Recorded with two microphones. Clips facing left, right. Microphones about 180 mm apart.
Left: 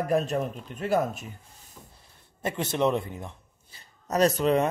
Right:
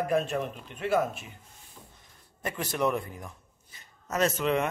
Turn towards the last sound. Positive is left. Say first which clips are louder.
# left 4 dB
turn(degrees=35)  # may be behind; listen again after turning